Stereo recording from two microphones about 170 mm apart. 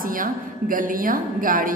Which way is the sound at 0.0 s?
55° right (ahead or behind).